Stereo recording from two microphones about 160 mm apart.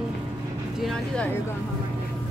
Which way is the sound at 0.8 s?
Centre (ahead or behind).